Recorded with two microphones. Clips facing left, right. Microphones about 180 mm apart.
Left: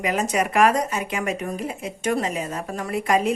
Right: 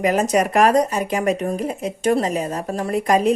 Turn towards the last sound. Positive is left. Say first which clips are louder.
# right 4 dB
turn(degrees=-40)  # may be behind; listen again after turning